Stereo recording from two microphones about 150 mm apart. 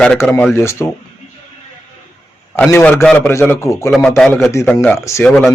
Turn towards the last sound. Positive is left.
turn(degrees=0)  # may be behind; listen again after turning